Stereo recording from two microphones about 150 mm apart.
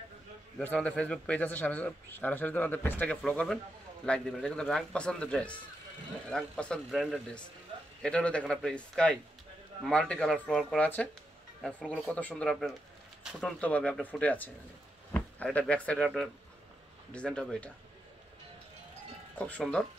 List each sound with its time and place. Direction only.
0.6 s a man's voice: 10° left (ahead or behind)
19.3 s a man's voice: 10° left (ahead or behind)